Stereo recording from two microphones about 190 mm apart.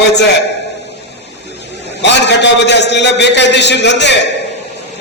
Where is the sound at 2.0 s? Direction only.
65° left (ahead or behind).